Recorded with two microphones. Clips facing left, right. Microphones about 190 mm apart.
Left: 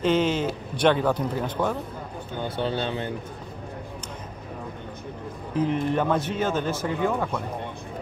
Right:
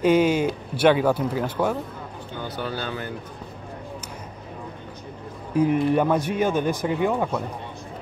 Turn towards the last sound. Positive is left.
turn(degrees=-15)  # may be behind; listen again after turning